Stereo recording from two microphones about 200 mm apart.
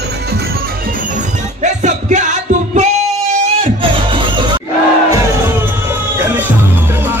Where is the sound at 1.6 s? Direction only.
35° right (ahead or behind).